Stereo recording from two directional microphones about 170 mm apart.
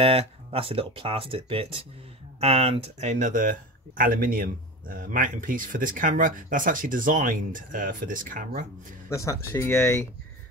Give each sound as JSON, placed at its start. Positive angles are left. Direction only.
{"t": 0.0, "sound": "speech", "side_deg": -35}
{"t": 9.1, "sound": "speech", "side_deg": 20}